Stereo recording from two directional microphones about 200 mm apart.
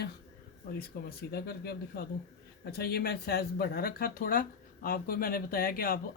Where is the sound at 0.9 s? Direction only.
50° left (ahead or behind).